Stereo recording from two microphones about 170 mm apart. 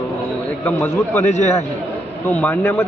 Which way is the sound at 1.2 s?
40° left (ahead or behind).